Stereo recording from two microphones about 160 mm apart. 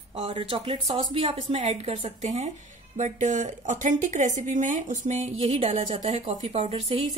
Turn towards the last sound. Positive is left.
turn(degrees=-40)  # may be behind; listen again after turning